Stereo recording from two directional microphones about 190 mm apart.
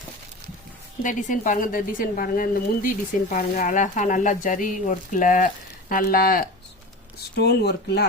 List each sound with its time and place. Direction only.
1.0 s a woman's voice: 45° left (ahead or behind)
7.3 s speech: 60° left (ahead or behind)